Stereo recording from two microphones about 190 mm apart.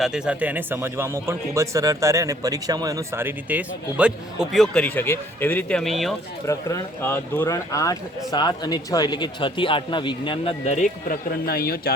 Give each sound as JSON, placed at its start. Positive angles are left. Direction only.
{"t": 0.0, "sound": "speech", "side_deg": -5}
{"t": 6.5, "sound": "speech", "side_deg": 15}